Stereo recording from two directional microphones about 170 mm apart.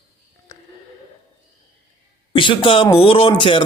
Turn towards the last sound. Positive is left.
turn(degrees=30)  # may be behind; listen again after turning